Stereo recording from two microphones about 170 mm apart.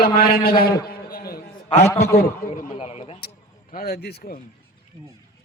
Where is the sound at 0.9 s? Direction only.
60° left (ahead or behind).